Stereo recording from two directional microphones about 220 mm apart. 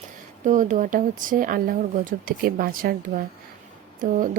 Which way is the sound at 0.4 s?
35° right (ahead or behind).